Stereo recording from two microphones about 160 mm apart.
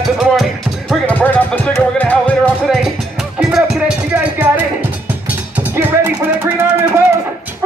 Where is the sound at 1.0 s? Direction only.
10° left (ahead or behind).